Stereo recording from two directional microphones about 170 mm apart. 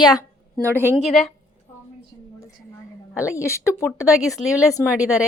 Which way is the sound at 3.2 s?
15° left (ahead or behind).